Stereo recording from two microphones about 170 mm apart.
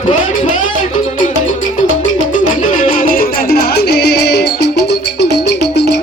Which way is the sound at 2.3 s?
50° left (ahead or behind).